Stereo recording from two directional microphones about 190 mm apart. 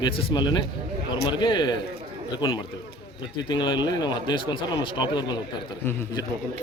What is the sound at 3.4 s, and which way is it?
Speech, 25° left (ahead or behind).